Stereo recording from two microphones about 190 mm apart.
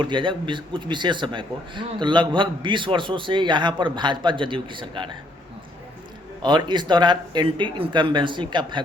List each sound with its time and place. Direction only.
0.0 s a man's voice: 25° right (ahead or behind)
6.4 s a man's voice: 25° right (ahead or behind)